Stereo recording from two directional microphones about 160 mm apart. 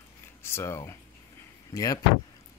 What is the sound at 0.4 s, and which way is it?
Speech, 15° left (ahead or behind).